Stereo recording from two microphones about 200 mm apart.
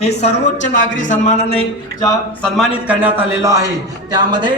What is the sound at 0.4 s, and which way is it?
Speech, 40° left (ahead or behind).